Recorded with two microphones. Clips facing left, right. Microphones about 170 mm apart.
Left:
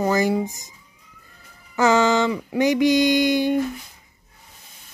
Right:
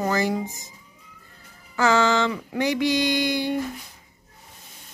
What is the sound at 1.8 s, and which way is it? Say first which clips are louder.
Female singing: left 3 dB; 20° left (ahead or behind).